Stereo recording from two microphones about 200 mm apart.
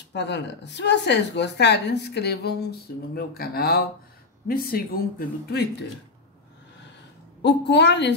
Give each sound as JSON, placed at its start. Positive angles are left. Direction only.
{"t": 0.1, "sound": "a woman's voice", "side_deg": 60}
{"t": 7.4, "sound": "a woman's voice", "side_deg": 60}